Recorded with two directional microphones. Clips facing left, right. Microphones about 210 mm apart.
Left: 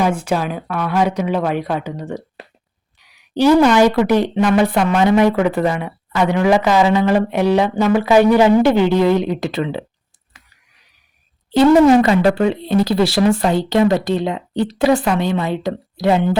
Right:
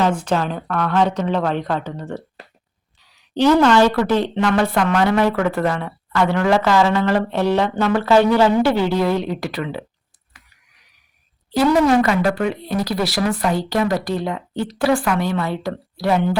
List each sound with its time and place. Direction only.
0.0 s a woman's voice: 10° left (ahead or behind); by 9.8 s 25° left (ahead or behind)
11.5 s speech: 25° left (ahead or behind)